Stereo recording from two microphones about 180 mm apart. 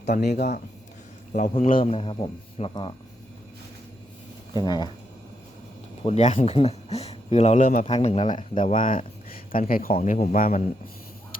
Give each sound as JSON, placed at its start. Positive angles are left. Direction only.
{"t": 0.0, "sound": "speech", "side_deg": 40}
{"t": 4.5, "sound": "speech", "side_deg": 25}
{"t": 6.0, "sound": "speech", "side_deg": 35}
{"t": 8.7, "sound": "speech", "side_deg": 45}